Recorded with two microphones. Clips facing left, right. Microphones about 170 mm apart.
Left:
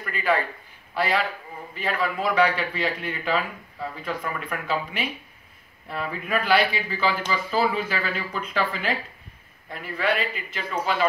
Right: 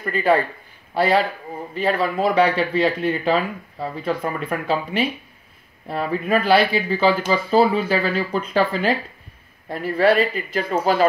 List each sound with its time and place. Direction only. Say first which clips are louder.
0.0 s speech: right 6 dB; 35° right (ahead or behind)